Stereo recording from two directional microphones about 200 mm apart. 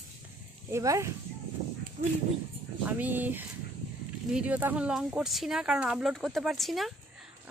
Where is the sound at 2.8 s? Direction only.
10° right (ahead or behind).